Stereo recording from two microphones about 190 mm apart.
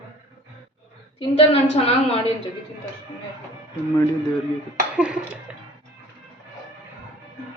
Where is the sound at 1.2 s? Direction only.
30° left (ahead or behind).